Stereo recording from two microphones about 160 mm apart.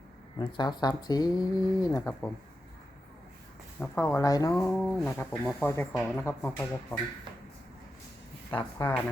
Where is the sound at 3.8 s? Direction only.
15° left (ahead or behind).